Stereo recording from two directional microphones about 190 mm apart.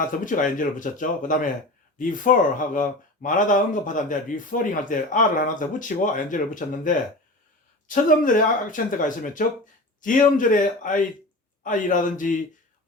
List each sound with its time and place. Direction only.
0.0 s speech: 45° left (ahead or behind)